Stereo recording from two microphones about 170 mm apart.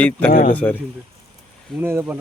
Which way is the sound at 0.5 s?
10° left (ahead or behind).